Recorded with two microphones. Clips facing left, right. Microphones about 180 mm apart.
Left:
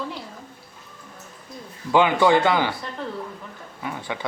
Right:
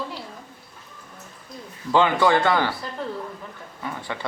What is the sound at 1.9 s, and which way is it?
Speech, 10° left (ahead or behind).